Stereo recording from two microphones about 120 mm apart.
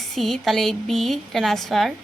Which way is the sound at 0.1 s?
Centre (ahead or behind).